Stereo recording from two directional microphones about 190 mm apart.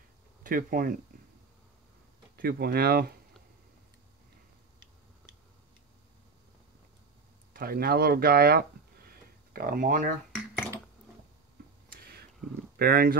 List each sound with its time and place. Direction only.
0.4 s speech: 45° right (ahead or behind)
2.3 s speech: 55° right (ahead or behind)
7.5 s speech: 50° right (ahead or behind)
11.9 s a sound: 55° right (ahead or behind)
12.7 s speech: 55° right (ahead or behind)